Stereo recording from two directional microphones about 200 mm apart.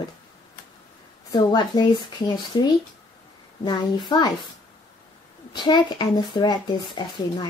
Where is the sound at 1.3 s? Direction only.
20° left (ahead or behind).